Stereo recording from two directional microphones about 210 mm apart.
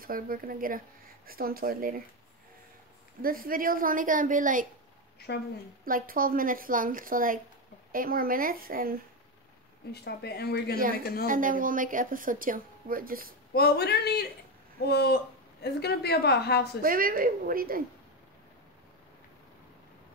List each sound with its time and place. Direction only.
0.0 s speech: 40° right (ahead or behind)
3.2 s a woman's voice: 45° right (ahead or behind)
5.9 s a woman's voice: 40° right (ahead or behind)
10.0 s a woman's voice: 50° left (ahead or behind)
11.2 s a woman's voice: 40° right (ahead or behind)
13.5 s a woman's voice: 50° left (ahead or behind)
16.8 s speech: 40° right (ahead or behind)